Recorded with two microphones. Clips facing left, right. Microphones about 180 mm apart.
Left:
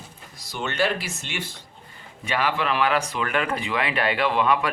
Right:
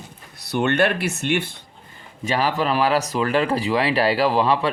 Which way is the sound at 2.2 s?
40° right (ahead or behind).